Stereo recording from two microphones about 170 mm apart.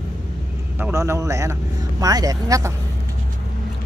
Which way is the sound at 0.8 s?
15° right (ahead or behind).